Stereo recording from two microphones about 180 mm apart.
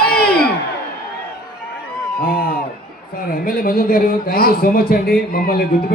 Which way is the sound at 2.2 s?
50° left (ahead or behind).